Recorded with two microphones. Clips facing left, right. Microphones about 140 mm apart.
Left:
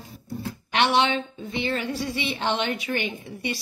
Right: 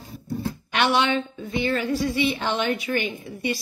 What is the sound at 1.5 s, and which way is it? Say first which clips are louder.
A woman's voice: right 4 dB; 25° left (ahead or behind).